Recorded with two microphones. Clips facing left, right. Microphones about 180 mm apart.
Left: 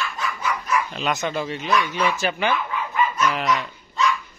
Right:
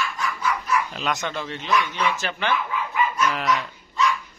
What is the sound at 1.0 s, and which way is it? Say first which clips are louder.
Speech: left 3 dB; 10° left (ahead or behind).